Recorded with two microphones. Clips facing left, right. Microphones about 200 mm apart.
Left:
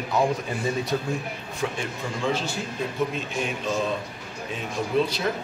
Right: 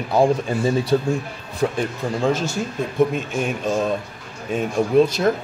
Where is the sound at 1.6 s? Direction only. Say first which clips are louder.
Right 8 dB; 45° right (ahead or behind).